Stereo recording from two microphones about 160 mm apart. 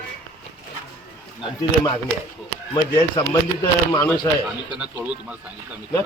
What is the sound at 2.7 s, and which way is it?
Speech, 25° left (ahead or behind).